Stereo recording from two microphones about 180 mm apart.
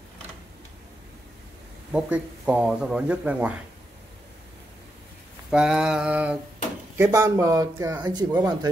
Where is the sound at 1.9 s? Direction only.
5° right (ahead or behind).